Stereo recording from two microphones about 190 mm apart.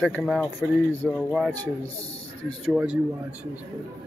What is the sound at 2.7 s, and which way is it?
Speech, 5° right (ahead or behind).